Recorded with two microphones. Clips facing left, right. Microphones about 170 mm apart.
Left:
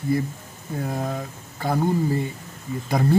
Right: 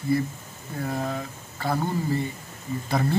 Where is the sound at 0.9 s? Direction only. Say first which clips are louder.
Even; 15° left (ahead or behind).